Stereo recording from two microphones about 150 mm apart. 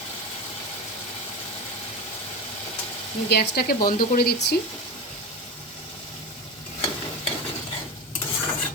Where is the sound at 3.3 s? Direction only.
90° left.